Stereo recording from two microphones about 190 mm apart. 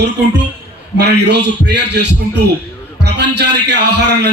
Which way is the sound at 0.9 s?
60° right (ahead or behind).